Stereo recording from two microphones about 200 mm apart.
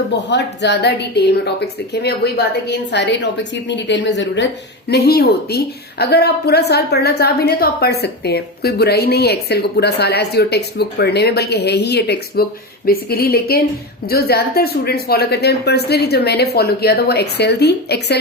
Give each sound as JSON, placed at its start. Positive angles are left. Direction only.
{"t": 0.3, "sound": "a woman's voice", "side_deg": 60}